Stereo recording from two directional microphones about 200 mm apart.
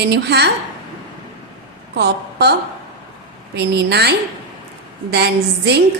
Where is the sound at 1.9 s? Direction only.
55° right (ahead or behind).